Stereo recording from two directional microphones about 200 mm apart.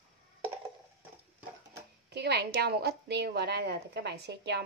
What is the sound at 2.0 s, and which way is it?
A woman's voice, 55° right (ahead or behind).